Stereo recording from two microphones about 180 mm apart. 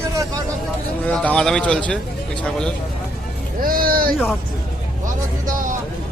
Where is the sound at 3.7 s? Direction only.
55° right (ahead or behind).